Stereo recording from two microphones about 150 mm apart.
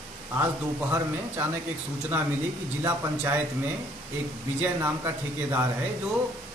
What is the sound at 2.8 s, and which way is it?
Speech, 15° right (ahead or behind).